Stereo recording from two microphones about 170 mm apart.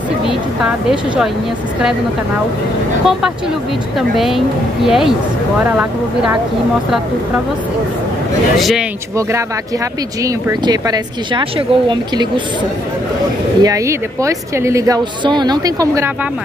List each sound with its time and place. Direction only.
0.7 s a woman's voice: 5° right (ahead or behind)
4.8 s a woman's voice: centre (ahead or behind)
8.5 s a woman's voice: centre (ahead or behind)
10.2 s a woman's voice: 25° right (ahead or behind)
13.6 s a woman's voice: 20° right (ahead or behind)